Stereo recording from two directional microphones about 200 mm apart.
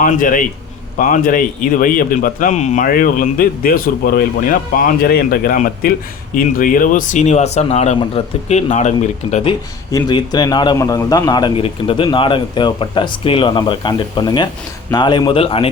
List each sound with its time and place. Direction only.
0.0 s a man's voice: 40° left (ahead or behind)